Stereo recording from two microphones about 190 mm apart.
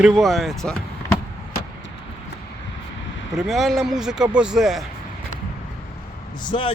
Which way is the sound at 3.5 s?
Centre (ahead or behind).